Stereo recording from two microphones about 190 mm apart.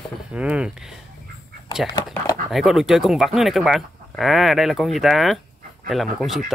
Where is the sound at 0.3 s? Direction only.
5° right (ahead or behind).